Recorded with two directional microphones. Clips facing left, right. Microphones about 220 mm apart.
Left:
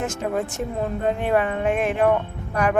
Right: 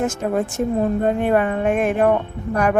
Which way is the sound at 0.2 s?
50° right (ahead or behind).